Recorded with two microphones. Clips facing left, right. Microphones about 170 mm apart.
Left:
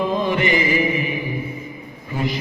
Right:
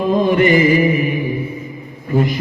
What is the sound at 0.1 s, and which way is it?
Mantra, 50° right (ahead or behind).